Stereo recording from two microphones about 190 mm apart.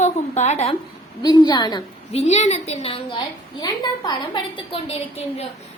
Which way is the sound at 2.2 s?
35° left (ahead or behind).